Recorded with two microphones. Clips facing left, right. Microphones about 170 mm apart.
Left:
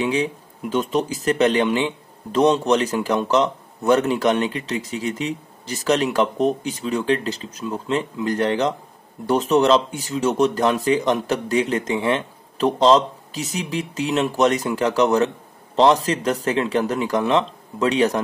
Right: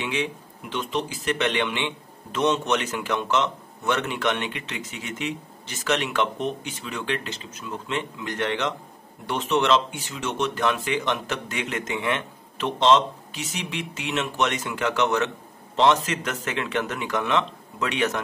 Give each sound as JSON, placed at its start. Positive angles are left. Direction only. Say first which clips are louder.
{"t": 0.0, "sound": "speech", "louder": "left 7 dB", "side_deg": 35}